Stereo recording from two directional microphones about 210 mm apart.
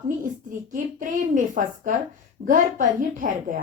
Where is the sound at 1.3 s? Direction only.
40° right (ahead or behind).